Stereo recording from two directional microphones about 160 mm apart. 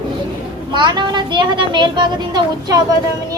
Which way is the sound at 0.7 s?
30° right (ahead or behind).